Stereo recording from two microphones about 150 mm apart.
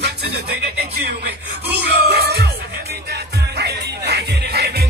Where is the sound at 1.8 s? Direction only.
90° right.